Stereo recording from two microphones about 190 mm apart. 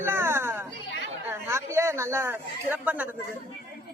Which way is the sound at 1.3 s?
15° right (ahead or behind).